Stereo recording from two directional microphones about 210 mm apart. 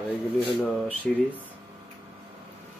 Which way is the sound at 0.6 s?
5° left (ahead or behind).